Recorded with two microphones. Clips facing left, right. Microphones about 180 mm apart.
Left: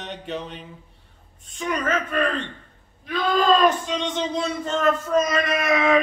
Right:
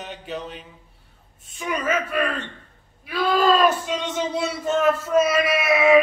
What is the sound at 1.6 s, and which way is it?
Speech, 5° right (ahead or behind).